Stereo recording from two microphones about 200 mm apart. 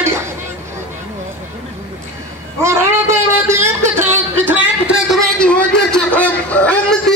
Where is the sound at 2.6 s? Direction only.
15° right (ahead or behind).